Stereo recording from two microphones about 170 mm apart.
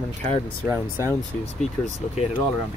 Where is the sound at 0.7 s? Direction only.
15° right (ahead or behind).